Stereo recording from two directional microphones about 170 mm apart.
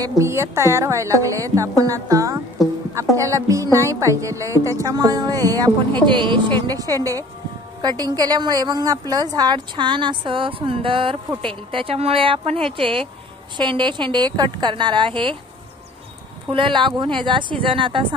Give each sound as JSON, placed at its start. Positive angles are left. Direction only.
{"t": 0.0, "sound": "a woman's voice", "side_deg": -15}
{"t": 16.4, "sound": "a woman's voice", "side_deg": -30}